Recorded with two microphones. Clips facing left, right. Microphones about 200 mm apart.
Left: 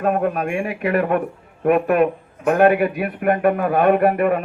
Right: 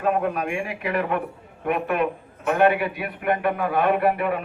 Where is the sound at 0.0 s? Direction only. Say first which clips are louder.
Left 3 dB; 50° left (ahead or behind).